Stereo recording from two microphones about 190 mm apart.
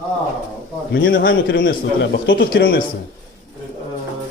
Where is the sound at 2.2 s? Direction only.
70° left (ahead or behind).